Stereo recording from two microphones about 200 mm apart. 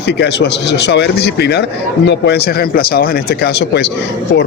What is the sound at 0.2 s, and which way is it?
Speech, 55° left (ahead or behind).